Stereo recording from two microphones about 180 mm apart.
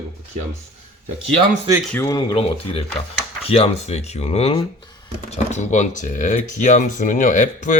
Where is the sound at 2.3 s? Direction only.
30° left (ahead or behind).